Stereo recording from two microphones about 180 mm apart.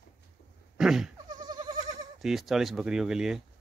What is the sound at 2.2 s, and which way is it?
Speech, centre (ahead or behind).